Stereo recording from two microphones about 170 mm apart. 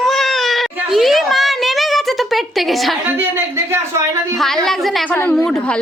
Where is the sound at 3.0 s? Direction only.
15° right (ahead or behind).